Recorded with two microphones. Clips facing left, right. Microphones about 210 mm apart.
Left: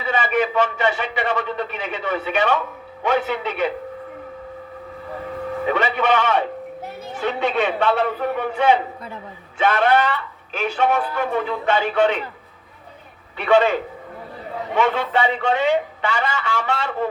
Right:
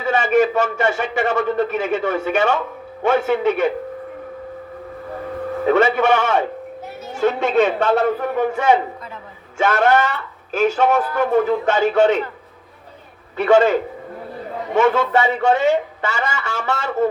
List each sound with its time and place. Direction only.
0.0 s speech: 45° right (ahead or behind)
5.6 s speech: 45° right (ahead or behind)
13.3 s speech: 45° right (ahead or behind)
14.8 s speech: 45° right (ahead or behind)